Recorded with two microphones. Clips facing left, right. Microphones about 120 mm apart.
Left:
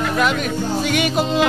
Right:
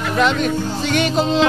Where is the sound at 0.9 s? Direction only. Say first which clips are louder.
Right 4 dB; 10° left (ahead or behind).